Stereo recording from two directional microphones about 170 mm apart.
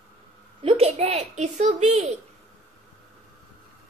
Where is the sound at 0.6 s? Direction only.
35° right (ahead or behind).